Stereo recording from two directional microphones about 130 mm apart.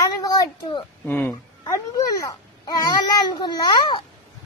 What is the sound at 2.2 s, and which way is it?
A child's voice, 30° left (ahead or behind).